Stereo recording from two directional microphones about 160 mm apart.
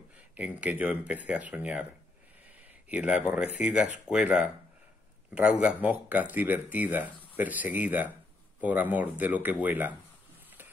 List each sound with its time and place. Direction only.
0.4 s speech: 10° right (ahead or behind)
2.9 s speech: 5° right (ahead or behind)